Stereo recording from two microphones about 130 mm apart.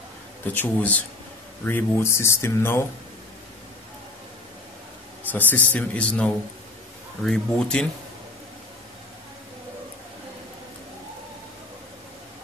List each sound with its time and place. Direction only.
0.5 s speech: 15° left (ahead or behind)
5.3 s speech: 15° left (ahead or behind)